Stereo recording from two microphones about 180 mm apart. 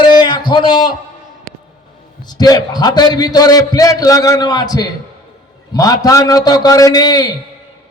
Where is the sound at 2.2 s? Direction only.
20° left (ahead or behind).